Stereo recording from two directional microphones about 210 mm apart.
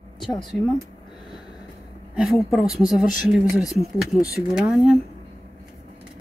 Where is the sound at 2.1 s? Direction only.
Centre (ahead or behind).